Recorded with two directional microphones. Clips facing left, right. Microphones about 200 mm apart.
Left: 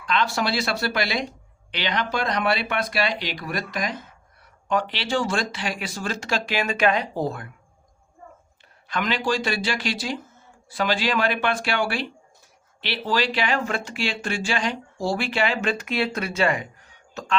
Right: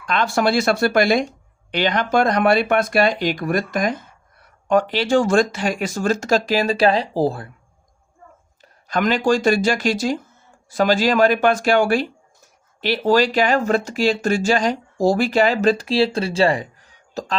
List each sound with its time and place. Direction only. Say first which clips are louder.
0.0 s speech: right 5 dB; 50° right (ahead or behind); by 7.5 s 30° right (ahead or behind)
8.6 s speech: right 7 dB; 45° right (ahead or behind)